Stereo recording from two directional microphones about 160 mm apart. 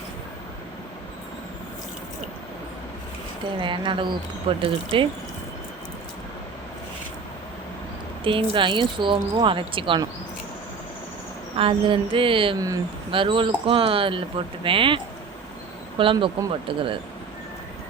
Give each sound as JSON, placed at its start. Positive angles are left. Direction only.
{"t": 3.6, "sound": "speech", "side_deg": -30}
{"t": 8.2, "sound": "speech", "side_deg": -35}
{"t": 11.5, "sound": "speech", "side_deg": -35}
{"t": 12.5, "sound": "speech", "side_deg": -20}